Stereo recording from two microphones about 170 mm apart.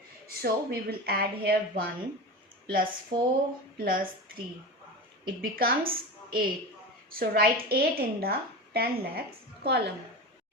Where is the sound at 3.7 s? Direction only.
55° right (ahead or behind).